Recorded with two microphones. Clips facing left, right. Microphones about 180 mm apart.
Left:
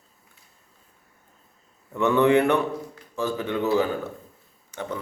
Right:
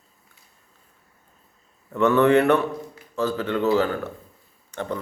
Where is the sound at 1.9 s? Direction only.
15° left (ahead or behind).